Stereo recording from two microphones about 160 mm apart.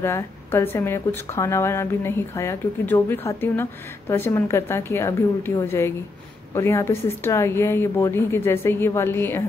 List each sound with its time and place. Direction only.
0.0 s a woman's voice: 15° left (ahead or behind)